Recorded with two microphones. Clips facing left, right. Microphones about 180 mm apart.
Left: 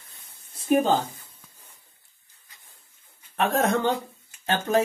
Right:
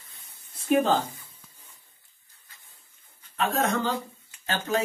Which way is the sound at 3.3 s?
65° left (ahead or behind).